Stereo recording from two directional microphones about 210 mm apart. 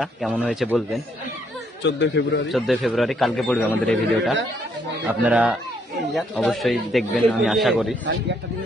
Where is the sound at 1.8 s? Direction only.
55° left (ahead or behind).